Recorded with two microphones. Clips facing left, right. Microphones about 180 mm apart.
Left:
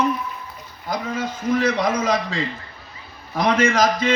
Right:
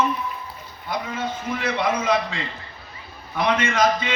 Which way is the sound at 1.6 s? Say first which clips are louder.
Right 1 dB; 40° left (ahead or behind).